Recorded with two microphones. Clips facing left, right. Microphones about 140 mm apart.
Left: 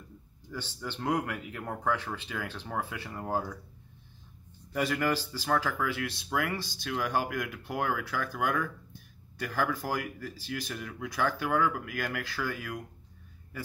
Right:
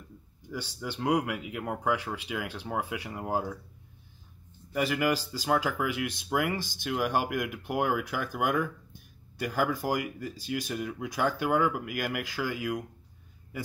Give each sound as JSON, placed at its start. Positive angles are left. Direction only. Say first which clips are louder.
{"t": 0.5, "sound": "speech", "louder": "right 2 dB", "side_deg": -10}
{"t": 4.7, "sound": "speech", "louder": "right 2 dB", "side_deg": -5}